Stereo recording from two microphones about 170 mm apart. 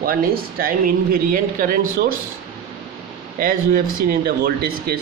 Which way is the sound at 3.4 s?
55° right (ahead or behind).